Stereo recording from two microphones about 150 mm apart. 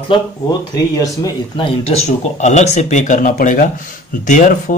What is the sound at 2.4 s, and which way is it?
Speech, 50° left (ahead or behind).